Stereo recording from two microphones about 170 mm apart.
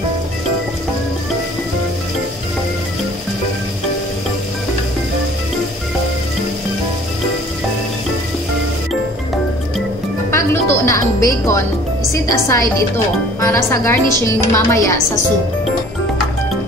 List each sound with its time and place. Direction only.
10.3 s music: 15° left (ahead or behind)
11.2 s speech: 20° left (ahead or behind)